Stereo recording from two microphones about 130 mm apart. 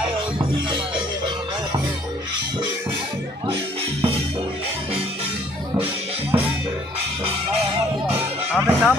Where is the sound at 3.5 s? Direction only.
45° right (ahead or behind).